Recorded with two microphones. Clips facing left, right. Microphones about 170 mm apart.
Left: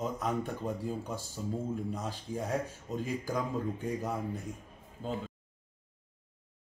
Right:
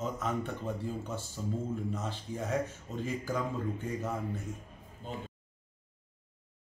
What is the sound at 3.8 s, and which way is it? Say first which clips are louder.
Speech: left 1 dB; 15° left (ahead or behind).